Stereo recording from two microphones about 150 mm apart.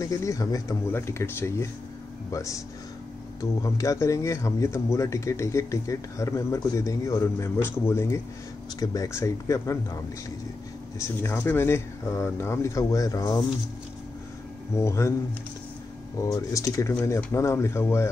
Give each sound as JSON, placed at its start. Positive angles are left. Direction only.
{"t": 0.0, "sound": "speech", "side_deg": 20}
{"t": 11.0, "sound": "speech", "side_deg": 15}
{"t": 14.8, "sound": "speech", "side_deg": 20}
{"t": 16.2, "sound": "speech", "side_deg": 20}